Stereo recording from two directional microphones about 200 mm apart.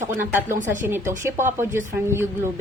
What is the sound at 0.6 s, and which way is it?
Speech, 40° right (ahead or behind).